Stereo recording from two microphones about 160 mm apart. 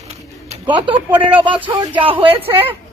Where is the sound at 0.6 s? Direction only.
30° right (ahead or behind).